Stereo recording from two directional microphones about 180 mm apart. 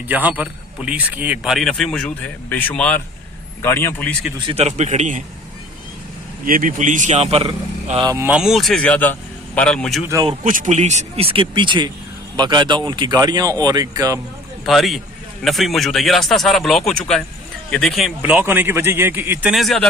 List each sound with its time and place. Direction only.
0.1 s a man's voice: 10° right (ahead or behind); by 4.2 s 10° left (ahead or behind)
4.4 s speech: 35° right (ahead or behind)
6.4 s a man's voice: 50° right (ahead or behind); by 8.1 s 30° right (ahead or behind)
8.1 s speech: 15° right (ahead or behind)
8.4 s a man's voice: centre (ahead or behind)
10.0 s speech: 15° right (ahead or behind)
10.4 s speech: 45° right (ahead or behind); by 14.2 s 20° right (ahead or behind)
14.7 s a man's voice: centre (ahead or behind)